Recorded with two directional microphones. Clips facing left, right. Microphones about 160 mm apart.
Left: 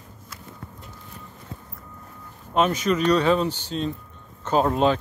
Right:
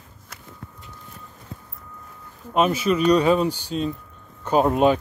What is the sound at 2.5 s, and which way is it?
Speech, 10° right (ahead or behind).